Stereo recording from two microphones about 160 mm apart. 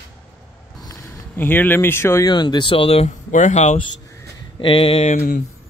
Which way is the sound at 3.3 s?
45° left (ahead or behind).